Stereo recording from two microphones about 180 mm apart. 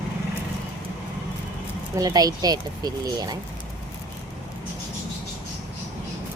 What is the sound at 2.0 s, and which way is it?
Speech, 20° right (ahead or behind).